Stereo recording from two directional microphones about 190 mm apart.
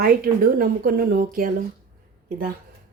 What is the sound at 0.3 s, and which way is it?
Speech, 50° right (ahead or behind).